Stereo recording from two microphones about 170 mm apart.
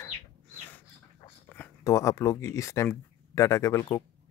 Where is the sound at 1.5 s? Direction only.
15° left (ahead or behind).